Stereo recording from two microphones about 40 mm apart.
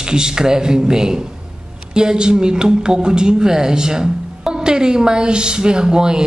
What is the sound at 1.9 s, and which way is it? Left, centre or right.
Speech, centre.